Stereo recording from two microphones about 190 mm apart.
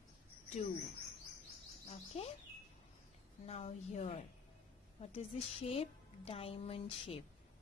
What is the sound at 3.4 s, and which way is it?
A woman's voice, 35° left (ahead or behind).